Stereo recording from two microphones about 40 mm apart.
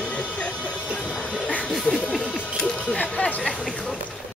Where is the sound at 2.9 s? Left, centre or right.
Left.